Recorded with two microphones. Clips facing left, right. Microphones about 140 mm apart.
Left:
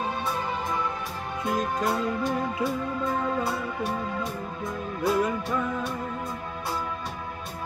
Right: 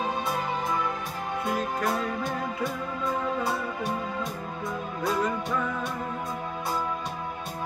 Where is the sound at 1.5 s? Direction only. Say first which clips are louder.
Left 3 dB; 15° left (ahead or behind).